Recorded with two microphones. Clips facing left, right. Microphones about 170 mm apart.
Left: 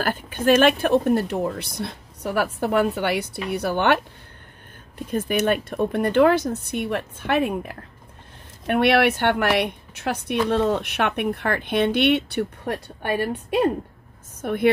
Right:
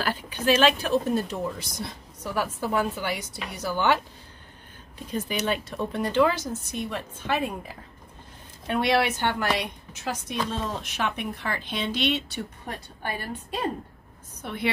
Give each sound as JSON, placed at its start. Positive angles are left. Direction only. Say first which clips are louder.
{"t": 0.0, "sound": "speech", "louder": "left 4 dB", "side_deg": 50}
{"t": 4.9, "sound": "speech", "louder": "left 6 dB", "side_deg": 50}
{"t": 14.4, "sound": "a woman's voice", "louder": "left 9 dB", "side_deg": 50}